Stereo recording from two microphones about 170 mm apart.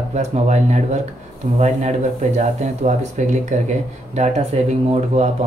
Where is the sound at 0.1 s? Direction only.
45° right (ahead or behind).